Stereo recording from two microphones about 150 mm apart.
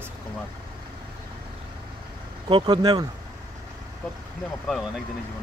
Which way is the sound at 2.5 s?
30° right (ahead or behind).